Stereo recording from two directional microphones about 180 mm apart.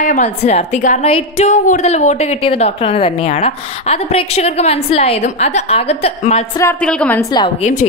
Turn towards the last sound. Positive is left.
turn(degrees=45)  # may be behind; listen again after turning